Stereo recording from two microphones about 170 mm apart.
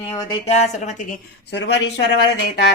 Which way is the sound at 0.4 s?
40° left (ahead or behind).